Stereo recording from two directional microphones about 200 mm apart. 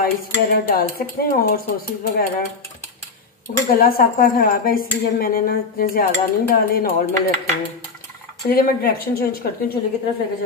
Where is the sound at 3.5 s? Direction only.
45° left (ahead or behind).